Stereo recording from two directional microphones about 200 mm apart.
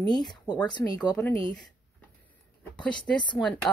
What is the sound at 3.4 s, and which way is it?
Speech, 5° left (ahead or behind).